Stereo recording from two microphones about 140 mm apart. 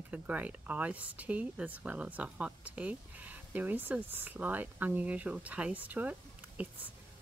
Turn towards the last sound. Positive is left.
turn(degrees=-10)  # may be behind; listen again after turning